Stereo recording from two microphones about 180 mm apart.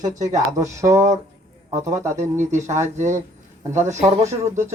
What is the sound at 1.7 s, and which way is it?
Speech, 40° right (ahead or behind).